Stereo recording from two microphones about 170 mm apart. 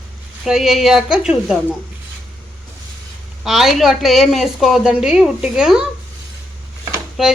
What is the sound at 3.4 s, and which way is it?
Speech, centre (ahead or behind).